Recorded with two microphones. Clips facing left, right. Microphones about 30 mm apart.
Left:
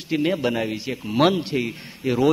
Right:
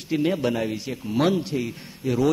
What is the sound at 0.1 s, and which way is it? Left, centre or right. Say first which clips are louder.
A man's voice: left 1 dB; centre.